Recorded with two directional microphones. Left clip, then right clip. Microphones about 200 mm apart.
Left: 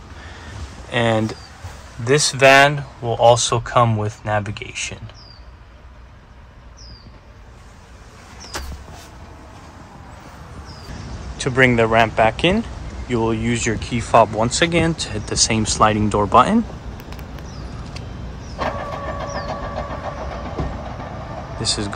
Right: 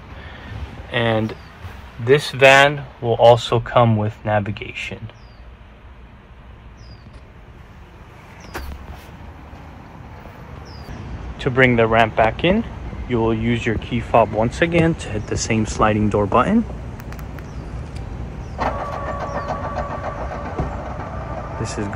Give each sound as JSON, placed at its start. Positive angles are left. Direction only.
{"t": 0.9, "sound": "speech", "side_deg": 25}
{"t": 11.4, "sound": "speech", "side_deg": 10}
{"t": 18.6, "sound": "vehicle", "side_deg": 20}